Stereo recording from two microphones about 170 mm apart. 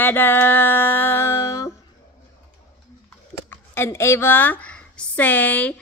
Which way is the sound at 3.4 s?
15° left (ahead or behind).